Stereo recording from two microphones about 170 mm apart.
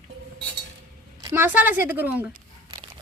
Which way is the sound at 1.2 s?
20° right (ahead or behind).